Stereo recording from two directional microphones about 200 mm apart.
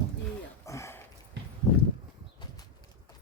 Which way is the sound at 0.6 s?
15° left (ahead or behind).